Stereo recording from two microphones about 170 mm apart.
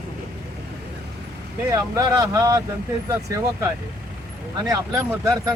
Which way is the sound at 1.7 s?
20° right (ahead or behind).